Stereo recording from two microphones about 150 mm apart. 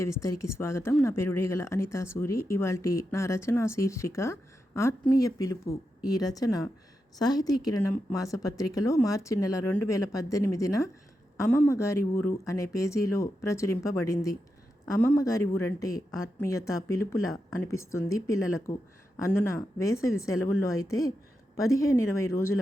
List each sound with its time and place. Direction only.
0.0 s speech: 20° left (ahead or behind)